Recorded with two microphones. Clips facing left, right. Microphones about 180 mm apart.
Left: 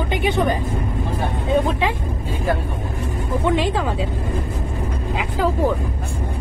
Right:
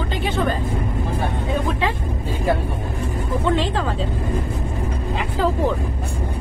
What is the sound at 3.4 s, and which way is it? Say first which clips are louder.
Speech: left 2 dB; 15° left (ahead or behind).